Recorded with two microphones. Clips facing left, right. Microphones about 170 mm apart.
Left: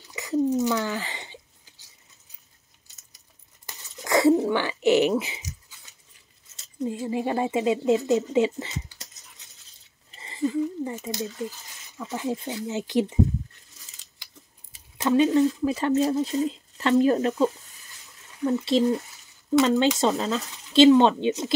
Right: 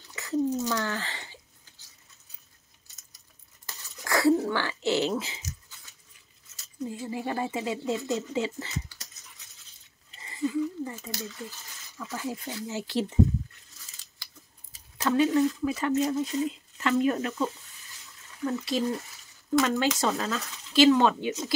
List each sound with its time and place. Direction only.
0.1 s a sound: 15° left (ahead or behind)
3.6 s a sound: 20° left (ahead or behind)
6.5 s speech: 20° left (ahead or behind)
10.8 s speech: 20° left (ahead or behind)
15.0 s speech: 20° left (ahead or behind)
15.6 s speech: 30° left (ahead or behind)
18.5 s speech: 25° left (ahead or behind)